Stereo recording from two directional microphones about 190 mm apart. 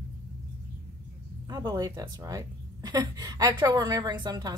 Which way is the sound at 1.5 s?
20° right (ahead or behind).